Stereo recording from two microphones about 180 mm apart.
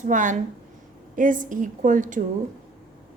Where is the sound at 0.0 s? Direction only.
45° right (ahead or behind).